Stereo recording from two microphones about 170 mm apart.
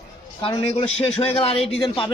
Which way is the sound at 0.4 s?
30° left (ahead or behind).